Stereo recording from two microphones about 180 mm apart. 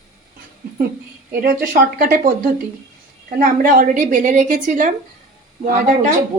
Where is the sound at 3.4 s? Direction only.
50° right (ahead or behind).